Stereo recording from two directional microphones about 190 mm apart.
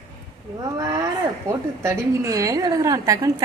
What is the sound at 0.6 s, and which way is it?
A woman's voice, 15° right (ahead or behind).